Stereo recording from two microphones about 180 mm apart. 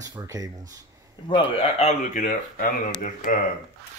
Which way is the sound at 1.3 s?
30° left (ahead or behind).